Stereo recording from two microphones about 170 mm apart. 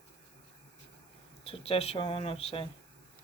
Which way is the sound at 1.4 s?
35° left (ahead or behind).